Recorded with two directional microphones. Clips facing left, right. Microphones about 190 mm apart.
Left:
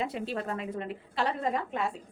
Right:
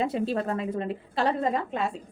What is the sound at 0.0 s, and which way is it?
A woman's voice, 35° right (ahead or behind).